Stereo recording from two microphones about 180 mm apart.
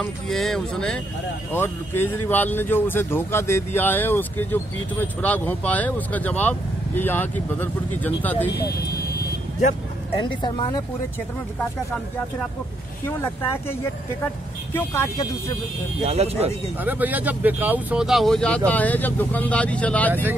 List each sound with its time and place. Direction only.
0.0 s speech: centre (ahead or behind)
10.2 s speech: 25° left (ahead or behind)
13.0 s speech: 10° left (ahead or behind)
16.0 s speech: 35° right (ahead or behind)
16.8 s speech: 10° right (ahead or behind); by 20.2 s 10° left (ahead or behind)